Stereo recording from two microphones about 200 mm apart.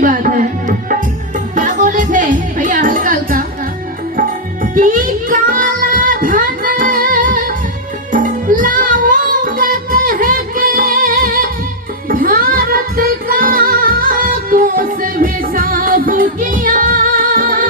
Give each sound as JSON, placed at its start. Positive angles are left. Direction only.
{"t": 0.0, "sound": "tabla", "side_deg": -40}
{"t": 1.5, "sound": "music", "side_deg": -40}